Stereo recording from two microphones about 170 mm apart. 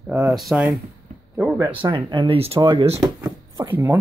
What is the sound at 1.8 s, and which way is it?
Speech, 30° right (ahead or behind).